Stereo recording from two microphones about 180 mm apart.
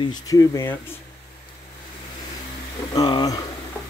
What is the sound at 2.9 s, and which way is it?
Speech, 20° left (ahead or behind).